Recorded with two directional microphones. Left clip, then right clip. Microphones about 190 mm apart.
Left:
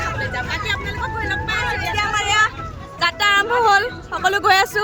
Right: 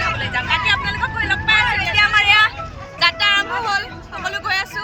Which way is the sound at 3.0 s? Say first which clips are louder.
Right 1 dB; 60° left (ahead or behind).